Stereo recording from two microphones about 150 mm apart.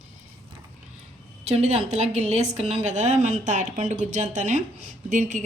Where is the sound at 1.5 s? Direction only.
45° right (ahead or behind).